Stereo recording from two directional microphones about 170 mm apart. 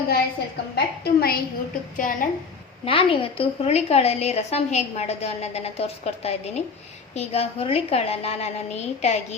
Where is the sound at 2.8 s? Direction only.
30° left (ahead or behind).